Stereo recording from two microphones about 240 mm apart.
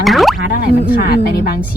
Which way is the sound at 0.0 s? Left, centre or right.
Centre.